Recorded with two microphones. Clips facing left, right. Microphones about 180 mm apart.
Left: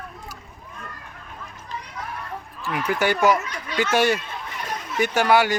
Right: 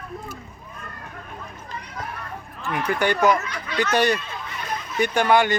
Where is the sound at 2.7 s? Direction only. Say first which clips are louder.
Even; 5° left (ahead or behind).